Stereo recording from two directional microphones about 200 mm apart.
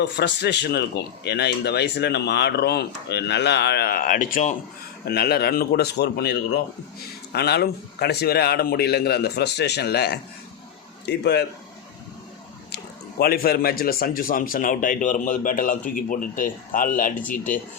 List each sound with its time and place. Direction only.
0.0 s speech: 55° left (ahead or behind); by 4.5 s 40° left (ahead or behind)
5.0 s a man's voice: 50° left (ahead or behind)
12.7 s speech: 50° left (ahead or behind)